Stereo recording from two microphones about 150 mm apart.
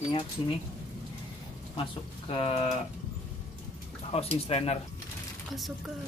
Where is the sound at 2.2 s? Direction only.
40° left (ahead or behind).